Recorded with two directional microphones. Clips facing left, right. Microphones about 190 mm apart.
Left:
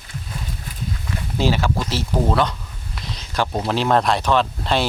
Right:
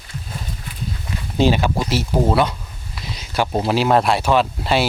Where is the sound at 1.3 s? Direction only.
20° right (ahead or behind).